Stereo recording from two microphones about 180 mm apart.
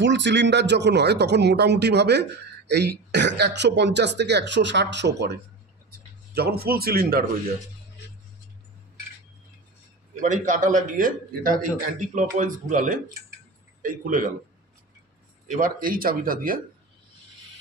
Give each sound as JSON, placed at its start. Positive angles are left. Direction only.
{"t": 0.0, "sound": "speech", "side_deg": -75}
{"t": 5.9, "sound": "speech", "side_deg": -60}
{"t": 10.2, "sound": "a man's voice", "side_deg": -45}
{"t": 15.4, "sound": "a man's voice", "side_deg": -50}